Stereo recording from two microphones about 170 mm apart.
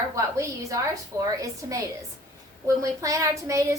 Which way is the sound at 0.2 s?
20° right (ahead or behind).